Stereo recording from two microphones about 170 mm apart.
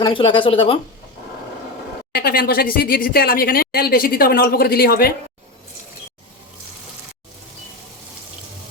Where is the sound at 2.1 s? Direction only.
60° left (ahead or behind).